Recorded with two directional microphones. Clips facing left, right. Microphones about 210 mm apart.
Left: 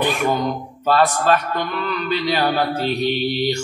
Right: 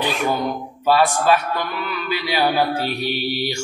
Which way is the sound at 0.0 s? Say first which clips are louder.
Left 2 dB; 50° left (ahead or behind).